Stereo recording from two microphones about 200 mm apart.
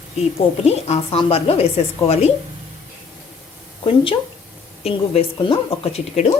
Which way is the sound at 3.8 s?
25° left (ahead or behind).